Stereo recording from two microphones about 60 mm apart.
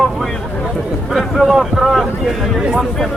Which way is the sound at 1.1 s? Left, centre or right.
Centre.